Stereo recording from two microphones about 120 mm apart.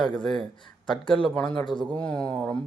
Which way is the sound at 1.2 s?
5° left (ahead or behind).